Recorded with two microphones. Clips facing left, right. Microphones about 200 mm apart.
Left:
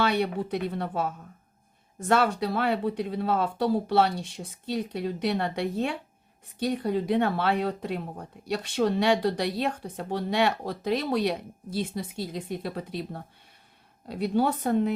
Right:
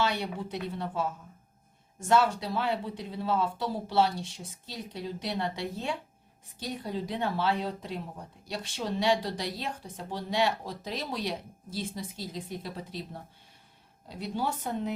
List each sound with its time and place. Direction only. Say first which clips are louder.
0.0 s a woman's voice: left 5 dB; 60° left (ahead or behind)